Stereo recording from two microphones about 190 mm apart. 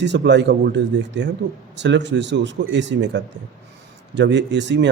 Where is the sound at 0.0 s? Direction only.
65° right (ahead or behind).